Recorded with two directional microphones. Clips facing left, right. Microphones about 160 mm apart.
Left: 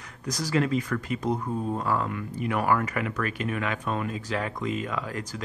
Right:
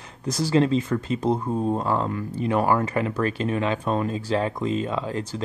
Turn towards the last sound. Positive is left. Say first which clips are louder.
# right 5 dB
turn(degrees=-25)  # may be behind; listen again after turning